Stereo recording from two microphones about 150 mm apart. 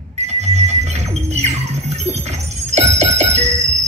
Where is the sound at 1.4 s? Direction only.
45° right (ahead or behind).